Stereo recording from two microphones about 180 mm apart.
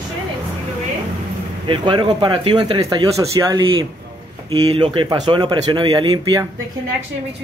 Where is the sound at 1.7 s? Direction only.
25° right (ahead or behind).